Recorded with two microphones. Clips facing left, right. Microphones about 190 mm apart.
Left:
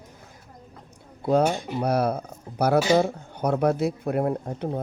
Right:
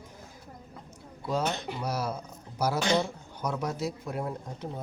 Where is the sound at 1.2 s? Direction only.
60° left (ahead or behind).